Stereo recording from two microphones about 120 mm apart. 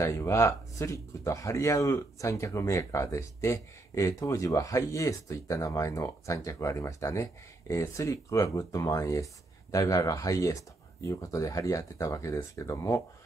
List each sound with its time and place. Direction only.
0.0 s speech: 25° left (ahead or behind)